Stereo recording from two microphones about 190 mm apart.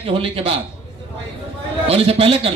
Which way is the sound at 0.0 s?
30° right (ahead or behind).